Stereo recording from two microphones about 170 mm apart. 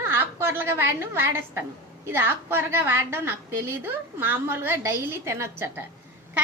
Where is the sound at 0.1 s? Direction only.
15° right (ahead or behind).